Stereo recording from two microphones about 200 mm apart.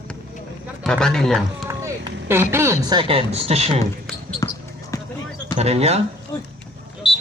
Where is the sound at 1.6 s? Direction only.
15° right (ahead or behind).